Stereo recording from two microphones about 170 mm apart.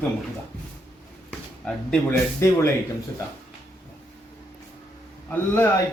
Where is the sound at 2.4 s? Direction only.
15° left (ahead or behind).